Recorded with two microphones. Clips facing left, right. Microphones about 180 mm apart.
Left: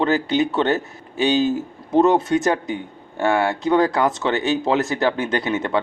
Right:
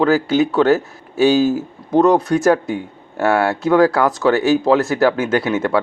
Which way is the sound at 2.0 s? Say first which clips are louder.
Right 2 dB; 25° left (ahead or behind).